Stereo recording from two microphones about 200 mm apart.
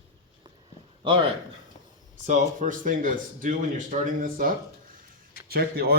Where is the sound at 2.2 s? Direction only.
40° right (ahead or behind).